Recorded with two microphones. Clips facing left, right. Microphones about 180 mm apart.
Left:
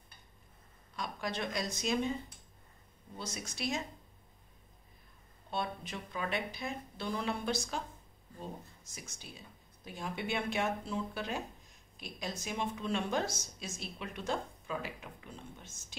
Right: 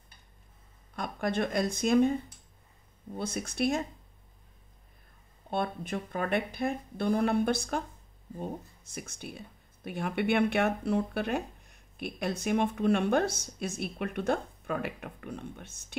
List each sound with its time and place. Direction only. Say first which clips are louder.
0.9 s speech: right 7 dB; 55° right (ahead or behind)
3.2 s speech: right 10 dB; 55° right (ahead or behind)
5.5 s speech: right 6 dB; 55° right (ahead or behind)
8.9 s speech: right 9 dB; 60° right (ahead or behind)